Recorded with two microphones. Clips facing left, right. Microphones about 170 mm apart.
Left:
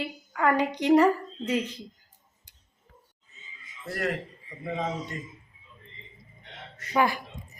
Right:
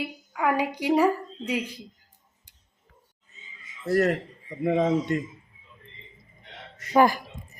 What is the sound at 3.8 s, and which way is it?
Speech, 40° right (ahead or behind).